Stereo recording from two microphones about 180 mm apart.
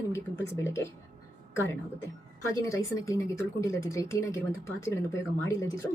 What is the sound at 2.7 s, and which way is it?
A woman's voice, 15° left (ahead or behind).